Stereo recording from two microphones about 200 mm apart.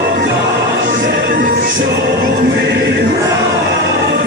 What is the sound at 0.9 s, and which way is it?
Music, 45° right (ahead or behind).